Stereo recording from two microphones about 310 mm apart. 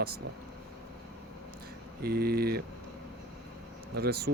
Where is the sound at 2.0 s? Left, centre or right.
Right.